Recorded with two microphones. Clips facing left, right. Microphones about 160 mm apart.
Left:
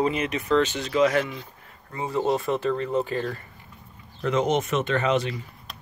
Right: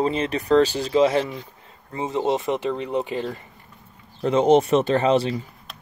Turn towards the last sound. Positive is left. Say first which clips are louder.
# right 5 dB
turn(degrees=-30)  # may be behind; listen again after turning